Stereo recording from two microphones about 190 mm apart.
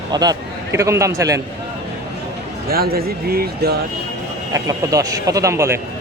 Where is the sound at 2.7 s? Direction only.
55° right (ahead or behind).